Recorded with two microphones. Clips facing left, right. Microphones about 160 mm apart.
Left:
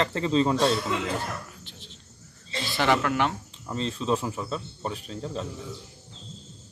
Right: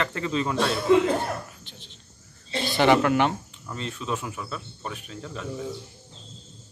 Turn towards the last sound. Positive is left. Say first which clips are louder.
# left 3 dB
turn(degrees=30)  # may be behind; listen again after turning